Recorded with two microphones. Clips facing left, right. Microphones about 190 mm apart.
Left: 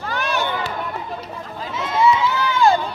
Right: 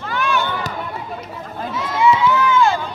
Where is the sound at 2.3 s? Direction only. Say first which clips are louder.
Right 1 dB; 35° left (ahead or behind).